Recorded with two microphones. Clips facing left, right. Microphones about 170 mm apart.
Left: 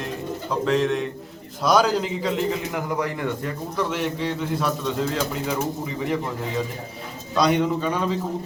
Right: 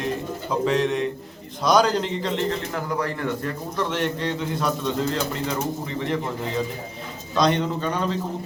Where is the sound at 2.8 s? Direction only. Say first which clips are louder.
Left 1 dB; 15° left (ahead or behind).